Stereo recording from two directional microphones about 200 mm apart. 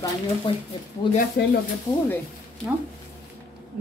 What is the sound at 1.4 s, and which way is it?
Speech, 55° left (ahead or behind).